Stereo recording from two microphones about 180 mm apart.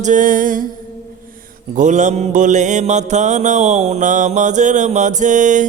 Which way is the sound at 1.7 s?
45° right (ahead or behind).